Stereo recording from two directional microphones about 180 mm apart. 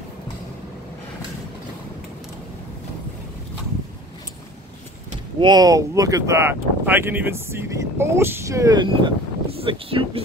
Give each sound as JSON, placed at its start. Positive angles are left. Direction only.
{"t": 5.4, "sound": "speech", "side_deg": -20}